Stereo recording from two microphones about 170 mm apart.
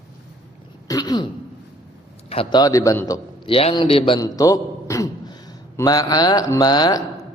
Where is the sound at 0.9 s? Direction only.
25° left (ahead or behind).